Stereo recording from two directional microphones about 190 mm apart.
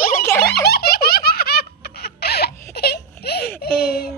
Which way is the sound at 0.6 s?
55° left (ahead or behind).